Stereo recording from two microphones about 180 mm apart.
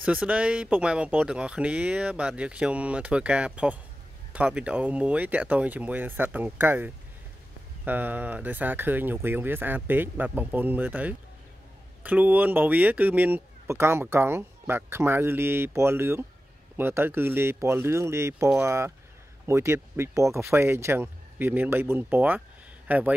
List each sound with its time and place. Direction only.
0.0 s speech: 5° right (ahead or behind)